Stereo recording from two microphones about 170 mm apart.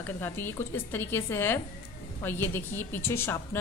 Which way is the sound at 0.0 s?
15° left (ahead or behind).